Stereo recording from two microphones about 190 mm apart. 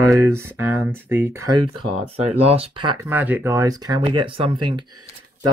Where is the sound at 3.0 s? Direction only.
10° right (ahead or behind).